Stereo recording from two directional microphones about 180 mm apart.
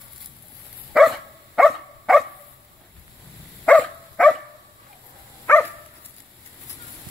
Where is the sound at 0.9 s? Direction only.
Centre (ahead or behind).